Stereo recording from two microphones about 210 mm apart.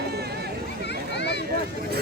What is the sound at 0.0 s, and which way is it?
Chatter, 50° right (ahead or behind).